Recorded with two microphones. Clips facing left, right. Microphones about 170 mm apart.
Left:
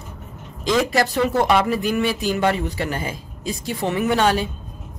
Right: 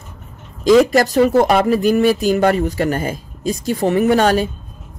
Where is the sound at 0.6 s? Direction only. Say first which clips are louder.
Right 8 dB; 45° right (ahead or behind).